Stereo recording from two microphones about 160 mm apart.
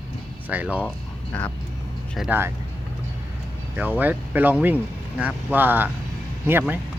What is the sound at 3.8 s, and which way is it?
Speech, 10° right (ahead or behind).